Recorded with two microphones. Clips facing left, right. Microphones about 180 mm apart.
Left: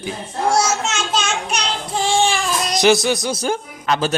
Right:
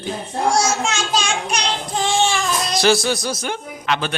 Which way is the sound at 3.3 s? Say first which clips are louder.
Left 4 dB; 35° left (ahead or behind).